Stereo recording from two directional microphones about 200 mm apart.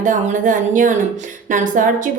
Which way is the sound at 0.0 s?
40° right (ahead or behind).